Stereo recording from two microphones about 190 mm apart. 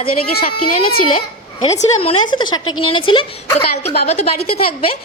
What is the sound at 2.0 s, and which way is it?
A woman's voice, 25° left (ahead or behind).